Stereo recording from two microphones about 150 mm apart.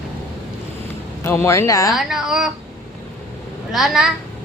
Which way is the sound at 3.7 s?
Centre (ahead or behind).